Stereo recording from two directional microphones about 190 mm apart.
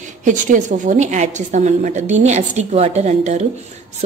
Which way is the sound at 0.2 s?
40° right (ahead or behind).